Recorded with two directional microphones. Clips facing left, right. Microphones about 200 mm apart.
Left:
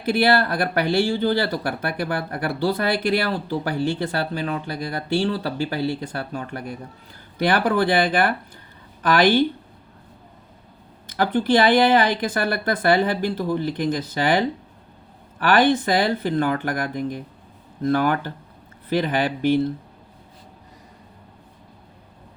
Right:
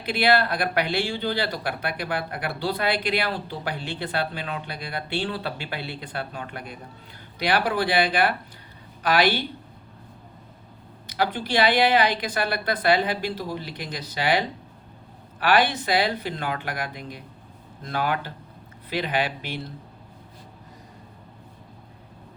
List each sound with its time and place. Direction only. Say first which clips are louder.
0.0 s speech: left 3 dB; 45° left (ahead or behind)
11.0 s speech: left 5 dB; 50° left (ahead or behind)